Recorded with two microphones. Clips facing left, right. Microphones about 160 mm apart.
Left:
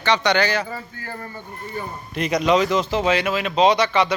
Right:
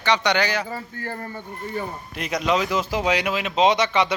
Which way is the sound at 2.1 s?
Centre (ahead or behind).